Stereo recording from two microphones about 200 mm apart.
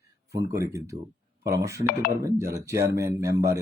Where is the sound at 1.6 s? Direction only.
15° right (ahead or behind).